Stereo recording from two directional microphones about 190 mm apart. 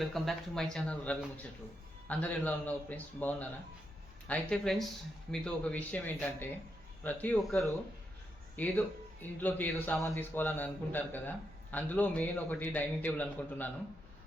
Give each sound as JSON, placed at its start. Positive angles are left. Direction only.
{"t": 0.0, "sound": "a man's voice", "side_deg": 0}